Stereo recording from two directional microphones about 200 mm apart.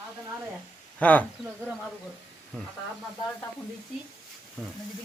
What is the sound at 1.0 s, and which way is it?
Speech, 10° left (ahead or behind).